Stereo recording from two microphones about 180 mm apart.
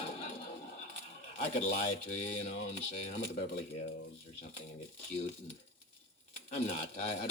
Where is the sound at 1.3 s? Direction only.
35° left (ahead or behind).